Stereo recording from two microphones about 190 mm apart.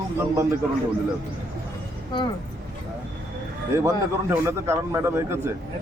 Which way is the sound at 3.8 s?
15° right (ahead or behind).